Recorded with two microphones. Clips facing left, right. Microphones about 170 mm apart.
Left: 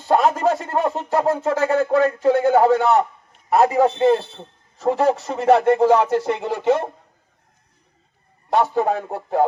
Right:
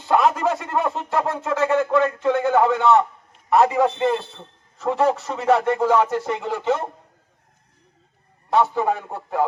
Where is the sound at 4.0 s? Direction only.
35° left (ahead or behind).